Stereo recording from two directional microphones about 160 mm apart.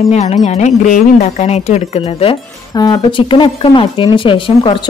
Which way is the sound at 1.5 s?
40° left (ahead or behind).